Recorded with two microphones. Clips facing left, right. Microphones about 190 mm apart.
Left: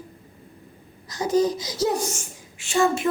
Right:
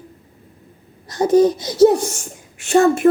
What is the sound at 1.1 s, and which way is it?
Speech, 60° right (ahead or behind).